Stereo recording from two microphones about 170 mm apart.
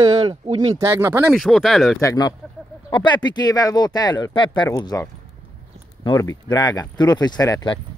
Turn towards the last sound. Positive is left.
turn(degrees=25)  # may be behind; listen again after turning